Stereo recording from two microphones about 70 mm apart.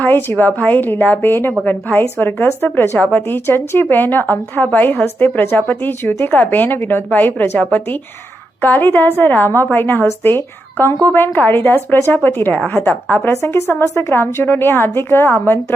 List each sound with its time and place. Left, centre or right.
0.0 s speech: left
13.3 s a woman's voice: left